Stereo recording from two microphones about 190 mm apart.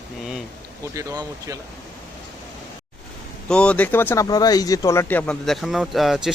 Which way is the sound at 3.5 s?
5° left (ahead or behind).